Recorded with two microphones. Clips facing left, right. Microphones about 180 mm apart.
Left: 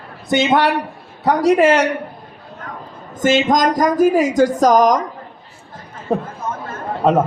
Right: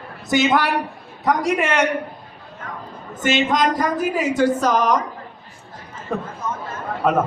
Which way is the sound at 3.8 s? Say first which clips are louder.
Left 7 dB; 40° left (ahead or behind).